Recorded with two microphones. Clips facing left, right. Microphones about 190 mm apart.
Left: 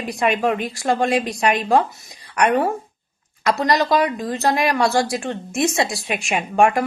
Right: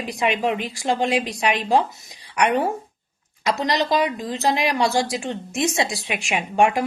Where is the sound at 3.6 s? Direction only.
50° left (ahead or behind).